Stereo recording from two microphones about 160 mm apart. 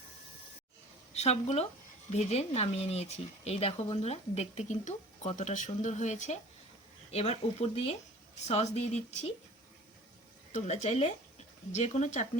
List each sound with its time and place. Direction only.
1.1 s speech: 40° left (ahead or behind)
10.5 s speech: 45° left (ahead or behind)